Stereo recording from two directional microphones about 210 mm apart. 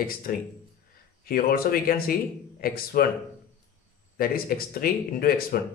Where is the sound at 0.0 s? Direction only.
45° left (ahead or behind).